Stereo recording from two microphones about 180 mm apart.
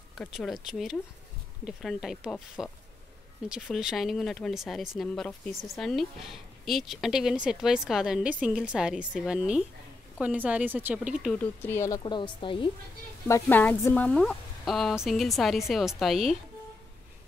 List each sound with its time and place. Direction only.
0.2 s a woman's voice: 5° left (ahead or behind)
11.3 s a woman's voice: 10° left (ahead or behind); by 12.6 s 30° left (ahead or behind)
13.3 s speech: 10° left (ahead or behind)